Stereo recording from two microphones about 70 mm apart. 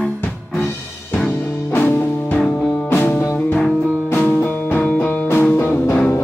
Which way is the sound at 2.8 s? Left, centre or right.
Left.